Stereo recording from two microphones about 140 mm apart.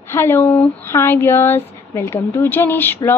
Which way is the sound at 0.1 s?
15° left (ahead or behind).